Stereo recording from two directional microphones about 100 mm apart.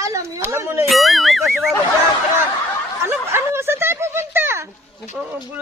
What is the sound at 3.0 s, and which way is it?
Snicker, 25° right (ahead or behind).